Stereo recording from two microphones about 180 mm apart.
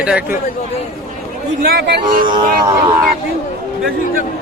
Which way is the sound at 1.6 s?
60° right (ahead or behind).